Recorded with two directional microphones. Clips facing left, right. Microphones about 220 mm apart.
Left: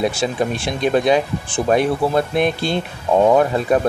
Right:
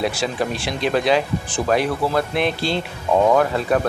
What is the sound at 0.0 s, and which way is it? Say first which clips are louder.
Speech: left 3 dB; 20° left (ahead or behind).